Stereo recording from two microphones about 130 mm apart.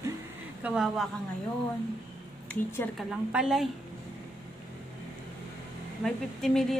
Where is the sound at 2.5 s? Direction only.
20° left (ahead or behind).